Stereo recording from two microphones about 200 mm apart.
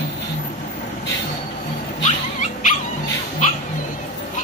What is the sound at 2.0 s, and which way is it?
Dog, 40° left (ahead or behind).